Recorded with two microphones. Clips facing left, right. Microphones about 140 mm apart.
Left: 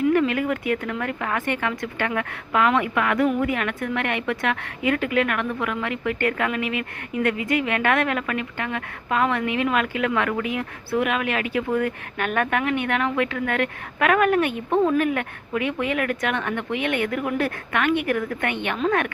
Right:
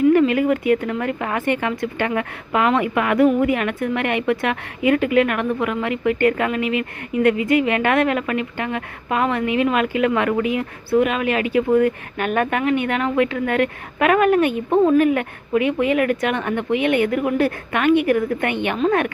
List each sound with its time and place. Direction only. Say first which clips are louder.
0.1 s a woman's voice: right 5 dB; 5° right (ahead or behind)